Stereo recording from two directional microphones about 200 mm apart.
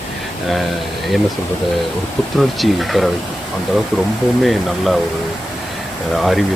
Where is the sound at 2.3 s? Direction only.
Centre (ahead or behind).